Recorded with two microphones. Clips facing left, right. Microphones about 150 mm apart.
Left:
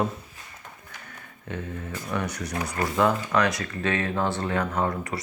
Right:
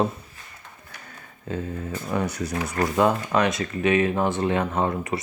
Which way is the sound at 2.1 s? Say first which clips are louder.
Right 3 dB; 25° right (ahead or behind).